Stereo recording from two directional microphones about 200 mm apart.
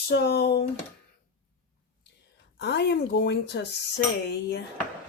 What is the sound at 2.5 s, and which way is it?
Speech, 60° left (ahead or behind).